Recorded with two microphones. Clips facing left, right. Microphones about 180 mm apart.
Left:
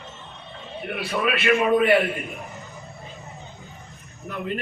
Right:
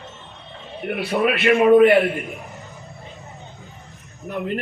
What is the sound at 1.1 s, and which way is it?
Speech, 45° right (ahead or behind).